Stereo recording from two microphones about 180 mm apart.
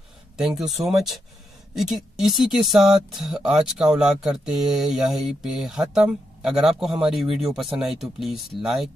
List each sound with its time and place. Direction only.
0.8 s speech: centre (ahead or behind)